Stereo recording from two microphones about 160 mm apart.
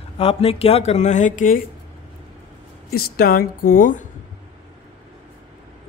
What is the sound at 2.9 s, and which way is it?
Speech, 70° left (ahead or behind).